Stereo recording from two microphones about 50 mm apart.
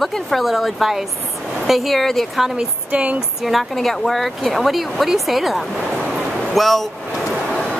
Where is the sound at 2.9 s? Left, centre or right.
Right.